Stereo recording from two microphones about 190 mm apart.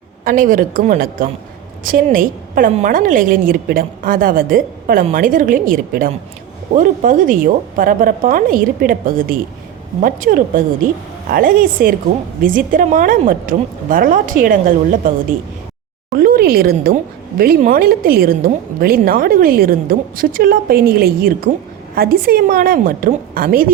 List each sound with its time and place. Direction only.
0.3 s a woman's voice: 45° right (ahead or behind)
16.1 s a woman's voice: 50° right (ahead or behind)